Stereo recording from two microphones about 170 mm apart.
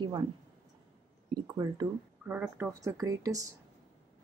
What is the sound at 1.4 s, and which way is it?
Speech, 20° right (ahead or behind).